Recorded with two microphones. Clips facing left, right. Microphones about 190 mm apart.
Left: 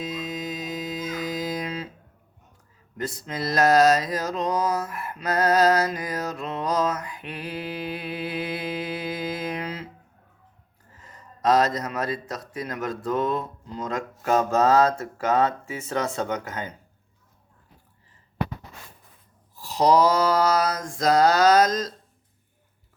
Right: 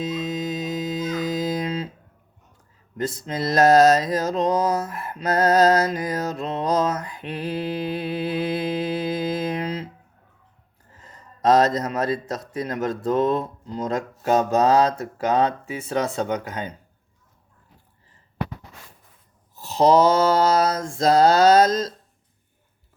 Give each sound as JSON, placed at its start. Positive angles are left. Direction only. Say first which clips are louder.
{"t": 0.0, "sound": "music", "louder": "right 5 dB", "side_deg": -25}
{"t": 3.0, "sound": "mantra", "louder": "right 4 dB", "side_deg": -25}
{"t": 11.0, "sound": "a man's voice", "louder": "right 3 dB", "side_deg": -25}
{"t": 19.5, "sound": "a man's voice", "louder": "right 3 dB", "side_deg": -25}